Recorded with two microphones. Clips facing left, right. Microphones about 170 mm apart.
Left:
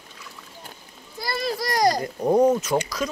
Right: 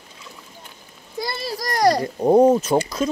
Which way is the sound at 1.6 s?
55° right (ahead or behind).